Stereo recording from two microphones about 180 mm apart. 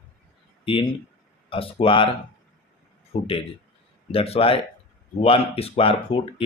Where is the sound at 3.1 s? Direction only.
30° left (ahead or behind).